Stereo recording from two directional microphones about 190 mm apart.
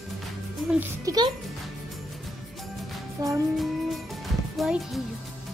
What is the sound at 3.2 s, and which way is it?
Speech, 20° right (ahead or behind).